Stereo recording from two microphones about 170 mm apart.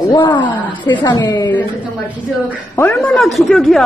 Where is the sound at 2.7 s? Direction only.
10° left (ahead or behind).